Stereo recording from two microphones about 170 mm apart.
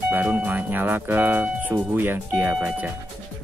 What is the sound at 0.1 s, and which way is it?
Speech, 10° right (ahead or behind).